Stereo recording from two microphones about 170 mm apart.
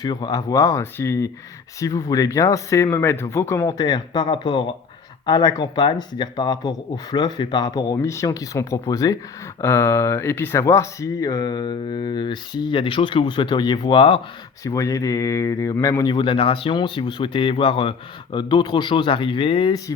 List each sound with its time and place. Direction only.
0.0 s speech: 25° left (ahead or behind)
14.6 s speech: 20° left (ahead or behind)